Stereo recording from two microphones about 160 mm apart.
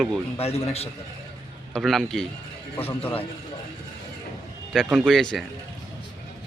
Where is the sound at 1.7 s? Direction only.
Centre (ahead or behind).